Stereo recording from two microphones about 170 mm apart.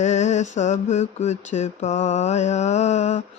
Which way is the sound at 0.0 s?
45° left (ahead or behind).